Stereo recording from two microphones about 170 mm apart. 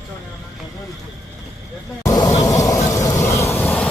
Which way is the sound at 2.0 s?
20° left (ahead or behind).